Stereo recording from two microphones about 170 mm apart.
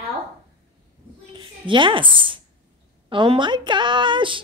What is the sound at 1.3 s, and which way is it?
A woman's voice, 30° right (ahead or behind).